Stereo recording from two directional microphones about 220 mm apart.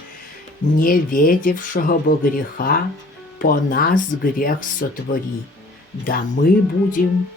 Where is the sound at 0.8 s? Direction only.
40° left (ahead or behind).